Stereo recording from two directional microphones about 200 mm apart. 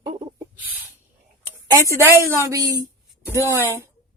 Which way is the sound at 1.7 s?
15° right (ahead or behind).